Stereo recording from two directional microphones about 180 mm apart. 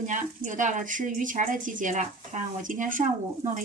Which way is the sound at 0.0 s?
45° right (ahead or behind).